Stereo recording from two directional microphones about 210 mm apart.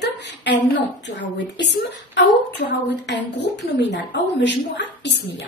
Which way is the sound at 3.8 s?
55° left (ahead or behind).